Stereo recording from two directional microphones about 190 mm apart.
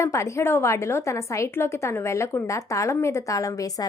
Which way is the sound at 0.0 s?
15° left (ahead or behind).